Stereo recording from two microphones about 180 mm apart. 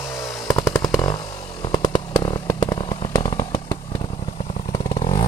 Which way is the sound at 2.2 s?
20° left (ahead or behind).